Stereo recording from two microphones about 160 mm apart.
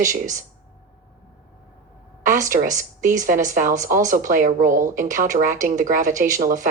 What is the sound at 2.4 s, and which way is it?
A woman's voice, 55° right (ahead or behind).